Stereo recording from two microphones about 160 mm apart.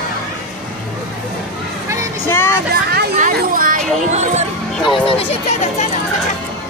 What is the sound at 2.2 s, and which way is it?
Music, 15° left (ahead or behind).